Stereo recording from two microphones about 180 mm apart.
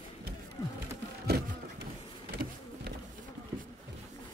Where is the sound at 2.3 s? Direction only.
60° right (ahead or behind).